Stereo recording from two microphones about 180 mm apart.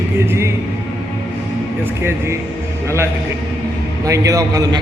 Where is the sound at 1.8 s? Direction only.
15° right (ahead or behind).